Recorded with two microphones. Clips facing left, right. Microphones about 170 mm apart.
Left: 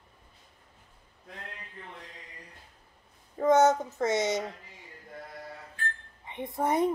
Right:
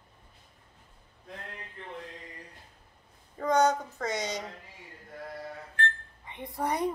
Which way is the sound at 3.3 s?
20° left (ahead or behind).